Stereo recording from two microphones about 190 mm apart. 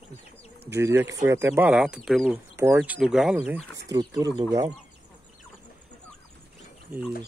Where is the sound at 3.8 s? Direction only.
20° right (ahead or behind).